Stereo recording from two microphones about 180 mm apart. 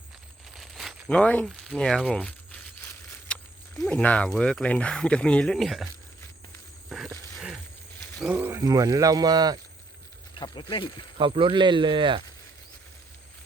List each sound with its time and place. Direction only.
0.5 s crumpling: centre (ahead or behind)
3.3 s dog: 5° left (ahead or behind)
3.8 s speech: 5° left (ahead or behind)
6.9 s a sound: centre (ahead or behind)
8.2 s speech: 10° right (ahead or behind)
10.3 s speech: 25° left (ahead or behind)
11.2 s speech: 25° right (ahead or behind)